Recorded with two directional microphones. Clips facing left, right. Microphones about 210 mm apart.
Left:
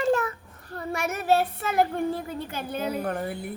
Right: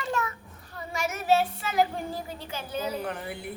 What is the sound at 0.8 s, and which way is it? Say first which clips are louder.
Speech: left 3 dB; 60° left (ahead or behind).